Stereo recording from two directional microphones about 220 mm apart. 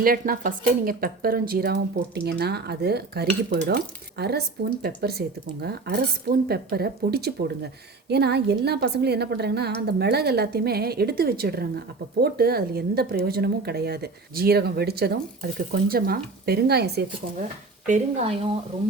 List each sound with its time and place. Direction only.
0.0 s a woman's voice: 40° right (ahead or behind)
17.8 s speech: 30° right (ahead or behind)